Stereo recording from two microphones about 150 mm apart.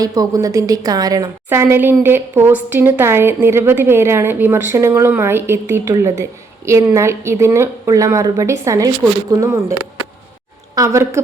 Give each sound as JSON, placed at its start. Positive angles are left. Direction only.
{"t": 0.0, "sound": "a woman's voice", "side_deg": -25}
{"t": 10.8, "sound": "a woman's voice", "side_deg": -20}